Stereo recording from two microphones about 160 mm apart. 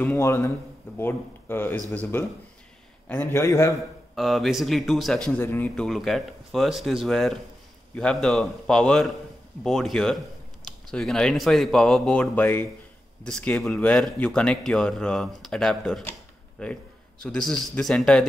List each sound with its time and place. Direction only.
0.2 s speech: 20° left (ahead or behind)
3.1 s speech: 10° left (ahead or behind)
4.1 s speech: centre (ahead or behind)